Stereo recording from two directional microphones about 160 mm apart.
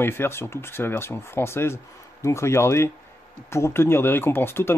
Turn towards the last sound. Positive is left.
turn(degrees=15)  # may be behind; listen again after turning